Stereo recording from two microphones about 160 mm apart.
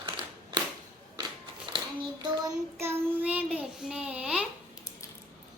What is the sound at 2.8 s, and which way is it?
Child singing, 10° right (ahead or behind).